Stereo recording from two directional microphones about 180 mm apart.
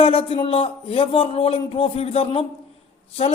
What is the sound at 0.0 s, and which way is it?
A man's voice, 30° left (ahead or behind).